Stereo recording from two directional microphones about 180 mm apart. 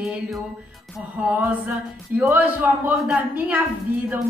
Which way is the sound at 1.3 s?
10° right (ahead or behind).